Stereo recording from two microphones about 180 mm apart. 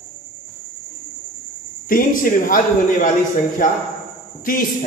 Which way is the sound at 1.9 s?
50° left (ahead or behind).